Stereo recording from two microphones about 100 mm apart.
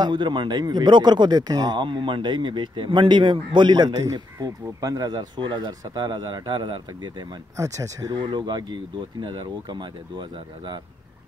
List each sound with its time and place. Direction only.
0.0 s speech: 50° right (ahead or behind)
7.5 s speech: 30° right (ahead or behind)
8.2 s speech: 50° right (ahead or behind)